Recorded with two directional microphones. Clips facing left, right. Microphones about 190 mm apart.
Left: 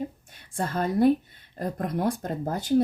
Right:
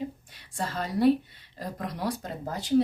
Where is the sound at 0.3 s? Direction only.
50° left (ahead or behind).